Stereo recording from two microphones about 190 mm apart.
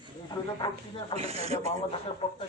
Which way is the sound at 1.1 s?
35° right (ahead or behind).